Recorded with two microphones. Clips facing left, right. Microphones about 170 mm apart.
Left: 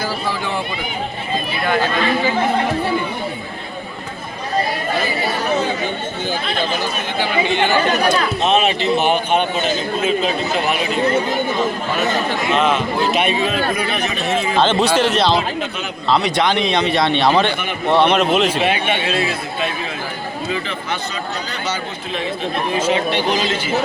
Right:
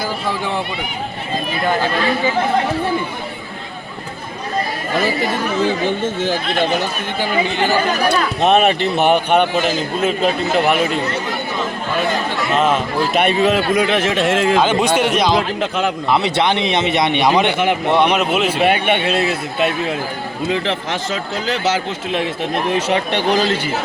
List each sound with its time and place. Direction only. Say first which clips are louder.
7.2 s speech: even; 40° right (ahead or behind)
8.4 s a man's voice: right 3 dB; 60° right (ahead or behind)
12.5 s speech: right 1 dB; centre (ahead or behind)
13.1 s speech: right 3 dB; 65° right (ahead or behind); by 14.5 s 90° right
14.5 s a man's voice: right 1 dB; 10° right (ahead or behind)
16.0 s a man's voice: left 2 dB; 25° right (ahead or behind)
18.6 s a man's voice: right 3 dB; 55° right (ahead or behind)
20.5 s speech: right 5 dB; 85° right
22.7 s a man's voice: left 2 dB; 60° right (ahead or behind)